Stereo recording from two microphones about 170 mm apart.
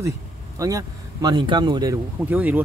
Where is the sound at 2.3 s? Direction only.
10° right (ahead or behind).